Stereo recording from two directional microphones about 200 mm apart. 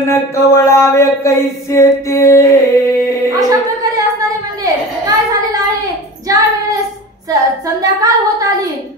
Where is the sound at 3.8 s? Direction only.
15° right (ahead or behind).